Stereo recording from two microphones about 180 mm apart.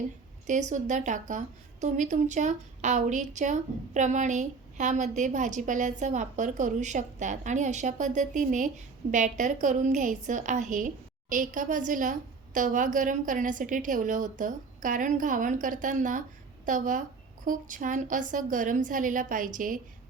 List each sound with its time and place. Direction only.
0.4 s a woman's voice: 45° right (ahead or behind)